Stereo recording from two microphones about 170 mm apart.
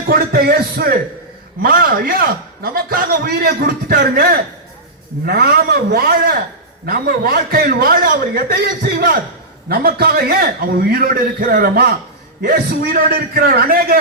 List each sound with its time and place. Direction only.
0.1 s a man's voice: 65° right (ahead or behind)